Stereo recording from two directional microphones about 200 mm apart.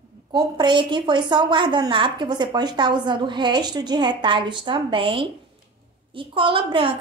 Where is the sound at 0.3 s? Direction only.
20° right (ahead or behind).